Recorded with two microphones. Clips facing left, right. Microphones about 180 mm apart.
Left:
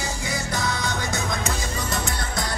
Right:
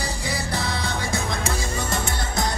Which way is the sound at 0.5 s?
30° right (ahead or behind).